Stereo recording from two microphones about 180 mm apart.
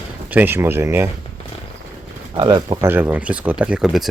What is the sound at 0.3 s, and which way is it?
Speech, 10° right (ahead or behind).